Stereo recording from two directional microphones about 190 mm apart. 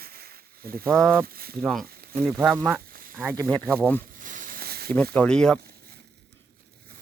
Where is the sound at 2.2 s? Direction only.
5° right (ahead or behind).